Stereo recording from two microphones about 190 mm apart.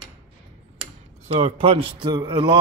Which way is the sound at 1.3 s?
35° right (ahead or behind).